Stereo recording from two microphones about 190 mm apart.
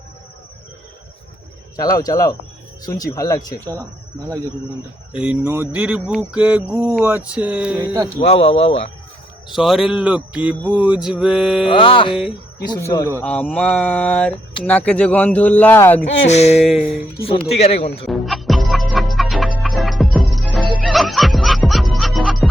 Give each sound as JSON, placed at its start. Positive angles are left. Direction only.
{"t": 1.7, "sound": "speech", "side_deg": 20}
{"t": 3.6, "sound": "a sound", "side_deg": -15}
{"t": 5.1, "sound": "a sound", "side_deg": -5}
{"t": 8.3, "sound": "speech", "side_deg": 35}
{"t": 9.5, "sound": "speech", "side_deg": 0}
{"t": 11.7, "sound": "speech", "side_deg": 25}
{"t": 13.2, "sound": "speech", "side_deg": 5}
{"t": 16.3, "sound": "speech", "side_deg": 35}
{"t": 16.6, "sound": "speech", "side_deg": 0}
{"t": 17.6, "sound": "speech", "side_deg": 30}
{"t": 18.0, "sound": "music", "side_deg": 0}